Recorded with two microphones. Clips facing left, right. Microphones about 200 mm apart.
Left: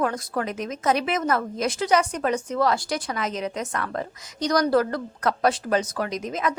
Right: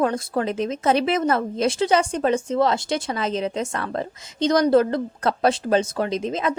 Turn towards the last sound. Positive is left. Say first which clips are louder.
# right 3 dB
turn(degrees=-25)  # may be behind; listen again after turning